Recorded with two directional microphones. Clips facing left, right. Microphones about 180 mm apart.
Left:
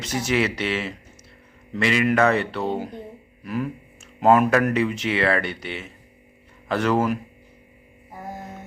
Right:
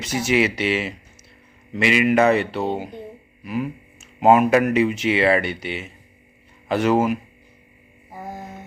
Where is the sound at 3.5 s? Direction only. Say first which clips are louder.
Right 1 dB; 10° right (ahead or behind).